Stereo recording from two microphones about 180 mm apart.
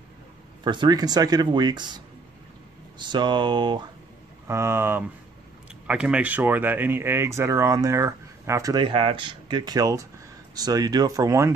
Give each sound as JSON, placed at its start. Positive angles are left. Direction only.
{"t": 0.7, "sound": "speech", "side_deg": -25}
{"t": 4.5, "sound": "speech", "side_deg": -15}